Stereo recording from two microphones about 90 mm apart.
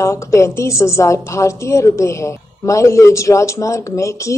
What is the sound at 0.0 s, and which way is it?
A woman's voice, 35° left (ahead or behind).